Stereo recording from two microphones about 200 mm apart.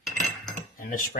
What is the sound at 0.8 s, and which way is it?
Speech, 45° left (ahead or behind).